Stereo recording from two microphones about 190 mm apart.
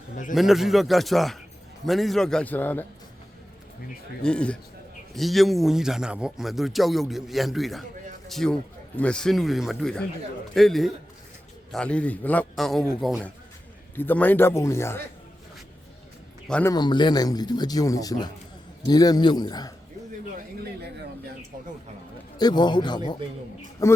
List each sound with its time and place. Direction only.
0.3 s speech: centre (ahead or behind)
4.2 s a man's voice: 5° left (ahead or behind)
16.5 s a man's voice: 5° left (ahead or behind)
16.7 s speech: 25° left (ahead or behind)
22.4 s a man's voice: 20° left (ahead or behind)